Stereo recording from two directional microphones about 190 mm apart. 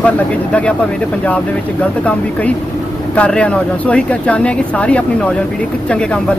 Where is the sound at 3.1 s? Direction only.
5° left (ahead or behind).